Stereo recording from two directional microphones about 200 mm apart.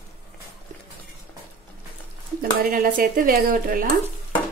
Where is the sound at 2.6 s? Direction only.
45° right (ahead or behind).